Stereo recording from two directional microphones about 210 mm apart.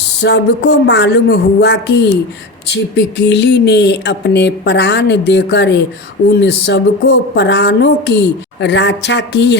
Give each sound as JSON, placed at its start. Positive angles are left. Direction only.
{"t": 0.2, "sound": "speech", "side_deg": 50}